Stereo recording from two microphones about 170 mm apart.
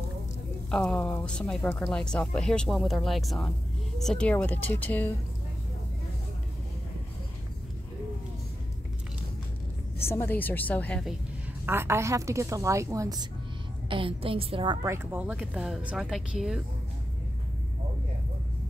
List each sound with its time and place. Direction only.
0.7 s a woman's voice: 5° left (ahead or behind)
10.0 s a woman's voice: 15° left (ahead or behind)
11.6 s a woman's voice: 15° right (ahead or behind)
13.8 s a woman's voice: 30° right (ahead or behind)
14.9 s speech: 10° right (ahead or behind)